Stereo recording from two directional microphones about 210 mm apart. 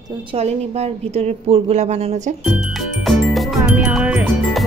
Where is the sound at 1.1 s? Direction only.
30° right (ahead or behind).